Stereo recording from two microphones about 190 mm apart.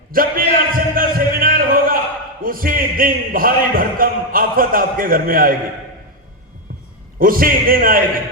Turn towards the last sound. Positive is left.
turn(degrees=-50)  # may be behind; listen again after turning